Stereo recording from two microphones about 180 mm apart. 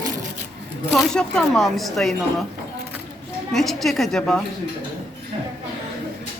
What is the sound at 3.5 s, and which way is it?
Speech, centre (ahead or behind).